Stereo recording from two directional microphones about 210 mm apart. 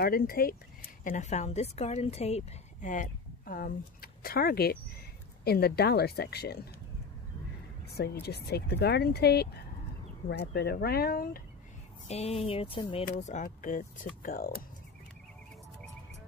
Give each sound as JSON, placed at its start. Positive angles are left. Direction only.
{"t": 0.0, "sound": "speech", "side_deg": 45}
{"t": 7.9, "sound": "speech", "side_deg": 50}
{"t": 12.1, "sound": "speech", "side_deg": 30}
{"t": 13.0, "sound": "speech", "side_deg": 40}